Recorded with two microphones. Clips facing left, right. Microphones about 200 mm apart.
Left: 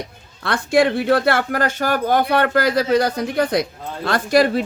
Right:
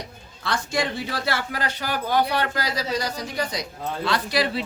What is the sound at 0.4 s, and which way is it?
Speech, 60° left (ahead or behind).